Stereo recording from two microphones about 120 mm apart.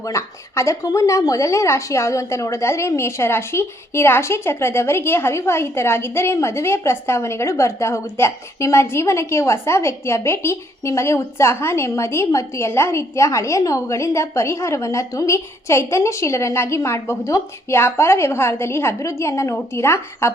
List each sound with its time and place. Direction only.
0.0 s speech: 25° left (ahead or behind)